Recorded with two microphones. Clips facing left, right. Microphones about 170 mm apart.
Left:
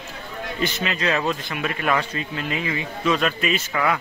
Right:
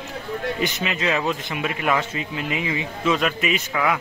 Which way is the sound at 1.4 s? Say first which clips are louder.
Right 1 dB; 15° right (ahead or behind).